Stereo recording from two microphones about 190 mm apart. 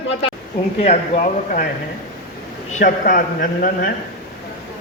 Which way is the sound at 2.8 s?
45° left (ahead or behind).